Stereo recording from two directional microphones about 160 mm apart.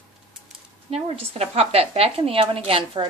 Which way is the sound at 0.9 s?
40° right (ahead or behind).